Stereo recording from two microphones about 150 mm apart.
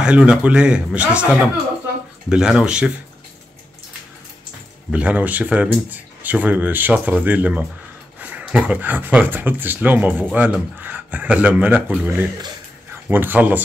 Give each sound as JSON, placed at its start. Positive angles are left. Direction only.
{"t": 0.0, "sound": "speech", "side_deg": -5}
{"t": 4.9, "sound": "speech", "side_deg": -10}